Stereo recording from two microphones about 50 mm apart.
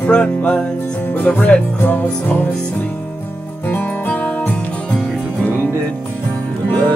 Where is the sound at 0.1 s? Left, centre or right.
Left.